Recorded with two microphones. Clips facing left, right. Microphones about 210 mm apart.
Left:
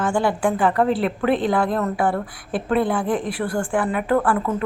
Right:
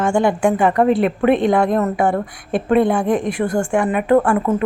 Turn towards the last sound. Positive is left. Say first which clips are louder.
# right 5 dB
turn(degrees=-25)  # may be behind; listen again after turning